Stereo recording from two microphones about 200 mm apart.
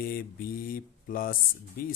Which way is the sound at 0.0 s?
45° left (ahead or behind).